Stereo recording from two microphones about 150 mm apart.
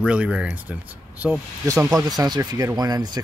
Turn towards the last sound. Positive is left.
turn(degrees=-25)  # may be behind; listen again after turning